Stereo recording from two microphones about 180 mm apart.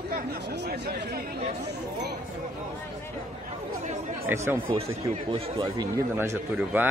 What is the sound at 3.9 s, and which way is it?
Speech, 45° right (ahead or behind).